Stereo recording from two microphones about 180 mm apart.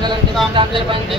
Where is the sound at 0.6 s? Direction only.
30° right (ahead or behind).